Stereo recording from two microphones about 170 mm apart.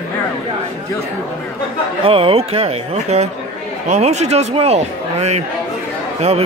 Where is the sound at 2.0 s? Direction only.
35° right (ahead or behind).